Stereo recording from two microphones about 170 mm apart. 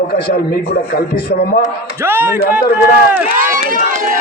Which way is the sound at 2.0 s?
10° right (ahead or behind).